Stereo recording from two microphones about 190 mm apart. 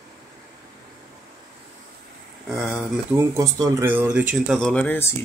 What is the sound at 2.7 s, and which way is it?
Speech, 15° right (ahead or behind).